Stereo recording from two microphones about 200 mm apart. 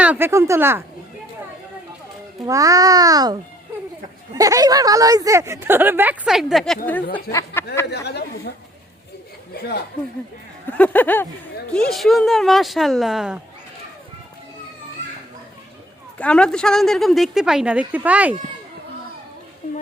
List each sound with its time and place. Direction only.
0.0 s speech: 10° right (ahead or behind)
2.4 s speech: 15° right (ahead or behind)
4.4 s speech: 15° right (ahead or behind); by 7.6 s 15° left (ahead or behind)
7.9 s speech: 55° left (ahead or behind)
10.7 s speech: 10° left (ahead or behind)
16.1 s speech: 5° left (ahead or behind)